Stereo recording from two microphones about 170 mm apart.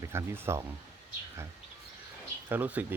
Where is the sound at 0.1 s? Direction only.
15° right (ahead or behind).